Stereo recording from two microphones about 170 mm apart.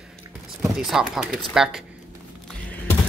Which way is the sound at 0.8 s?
5° right (ahead or behind).